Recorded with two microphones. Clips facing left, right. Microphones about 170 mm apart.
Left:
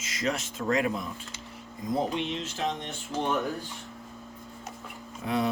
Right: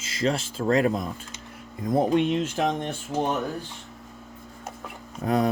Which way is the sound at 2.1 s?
50° right (ahead or behind).